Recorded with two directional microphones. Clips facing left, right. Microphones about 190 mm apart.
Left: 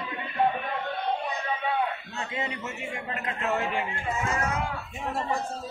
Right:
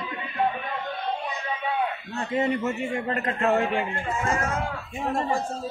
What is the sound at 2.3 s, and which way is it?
A man's voice, 50° right (ahead or behind).